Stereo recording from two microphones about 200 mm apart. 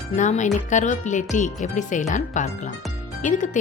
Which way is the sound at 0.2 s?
35° left (ahead or behind).